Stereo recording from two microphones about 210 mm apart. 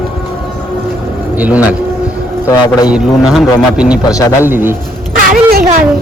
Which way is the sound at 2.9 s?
5° right (ahead or behind).